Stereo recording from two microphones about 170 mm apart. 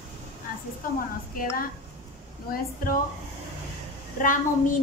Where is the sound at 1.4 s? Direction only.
55° left (ahead or behind).